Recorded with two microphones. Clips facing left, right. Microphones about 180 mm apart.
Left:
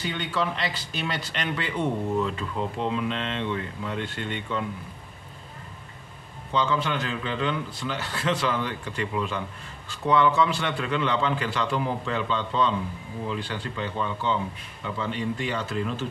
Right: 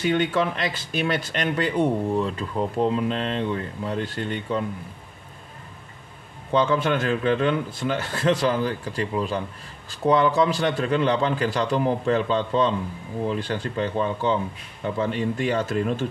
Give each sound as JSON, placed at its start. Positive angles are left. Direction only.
{"t": 0.0, "sound": "speech", "side_deg": -50}
{"t": 6.5, "sound": "speech", "side_deg": -50}